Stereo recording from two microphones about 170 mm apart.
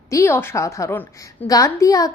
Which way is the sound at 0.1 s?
15° left (ahead or behind).